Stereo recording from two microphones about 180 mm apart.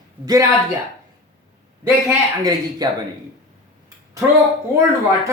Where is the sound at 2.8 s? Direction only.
20° right (ahead or behind).